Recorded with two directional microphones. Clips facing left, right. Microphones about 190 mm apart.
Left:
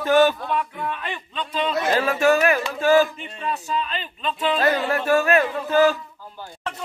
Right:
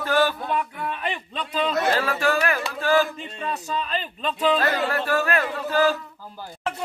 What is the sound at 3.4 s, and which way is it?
Speech, 40° right (ahead or behind).